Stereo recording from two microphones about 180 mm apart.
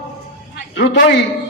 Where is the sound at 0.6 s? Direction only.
90° left.